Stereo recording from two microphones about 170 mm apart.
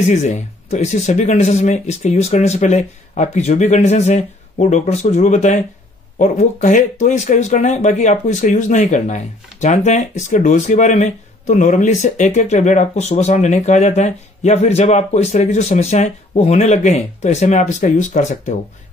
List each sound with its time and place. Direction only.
0.1 s speech: 45° left (ahead or behind)